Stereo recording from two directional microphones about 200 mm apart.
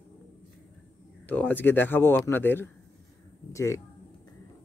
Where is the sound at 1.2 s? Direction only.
10° left (ahead or behind).